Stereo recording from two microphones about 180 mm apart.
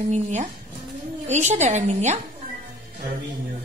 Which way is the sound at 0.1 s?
40° right (ahead or behind).